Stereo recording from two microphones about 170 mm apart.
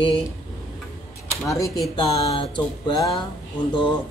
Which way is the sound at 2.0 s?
30° left (ahead or behind).